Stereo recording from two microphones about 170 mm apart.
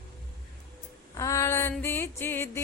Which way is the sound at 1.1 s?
20° left (ahead or behind).